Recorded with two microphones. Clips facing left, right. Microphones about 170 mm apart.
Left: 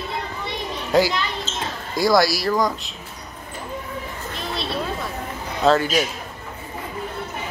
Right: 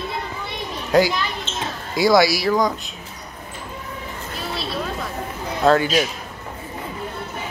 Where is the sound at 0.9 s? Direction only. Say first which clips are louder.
Right 1 dB; centre (ahead or behind).